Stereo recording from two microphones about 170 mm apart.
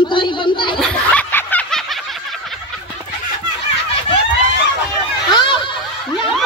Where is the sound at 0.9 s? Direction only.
10° left (ahead or behind).